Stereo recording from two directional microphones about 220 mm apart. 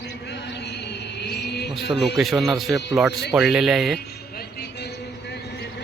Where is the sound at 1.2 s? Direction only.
50° left (ahead or behind).